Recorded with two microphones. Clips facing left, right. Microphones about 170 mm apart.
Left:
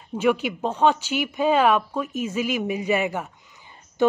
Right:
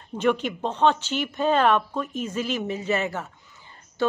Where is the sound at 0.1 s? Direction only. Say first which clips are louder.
Left 2 dB; 10° left (ahead or behind).